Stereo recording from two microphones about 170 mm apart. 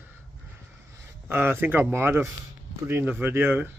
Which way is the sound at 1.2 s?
15° right (ahead or behind).